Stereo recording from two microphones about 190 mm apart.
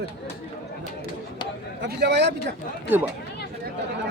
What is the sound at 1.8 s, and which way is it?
Speech, 60° right (ahead or behind).